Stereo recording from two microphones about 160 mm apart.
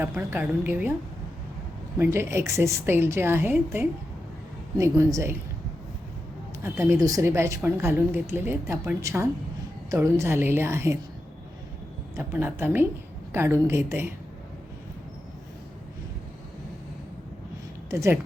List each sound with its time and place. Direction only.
0.0 s a woman's voice: 15° right (ahead or behind)
2.0 s a woman's voice: 15° right (ahead or behind)
6.6 s a woman's voice: 20° right (ahead or behind)
12.1 s a woman's voice: 15° right (ahead or behind)
17.9 s a woman's voice: 15° right (ahead or behind)